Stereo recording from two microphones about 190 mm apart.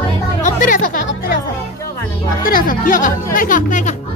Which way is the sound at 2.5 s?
45° left (ahead or behind).